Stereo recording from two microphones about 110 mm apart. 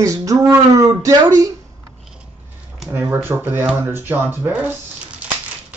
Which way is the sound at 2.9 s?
20° right (ahead or behind).